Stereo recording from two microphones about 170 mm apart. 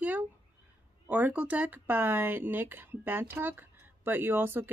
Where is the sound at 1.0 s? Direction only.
10° right (ahead or behind).